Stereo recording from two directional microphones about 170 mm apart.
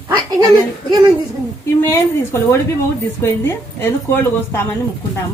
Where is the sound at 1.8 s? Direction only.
15° left (ahead or behind).